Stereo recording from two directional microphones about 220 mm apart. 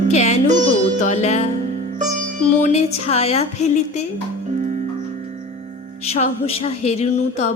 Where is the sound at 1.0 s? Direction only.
30° left (ahead or behind).